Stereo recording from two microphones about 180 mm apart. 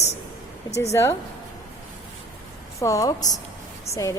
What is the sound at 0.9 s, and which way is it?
Speech, 15° left (ahead or behind).